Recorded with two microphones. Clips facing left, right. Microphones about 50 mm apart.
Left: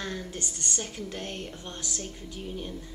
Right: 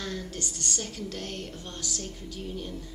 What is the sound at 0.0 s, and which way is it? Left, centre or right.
A woman's voice, centre.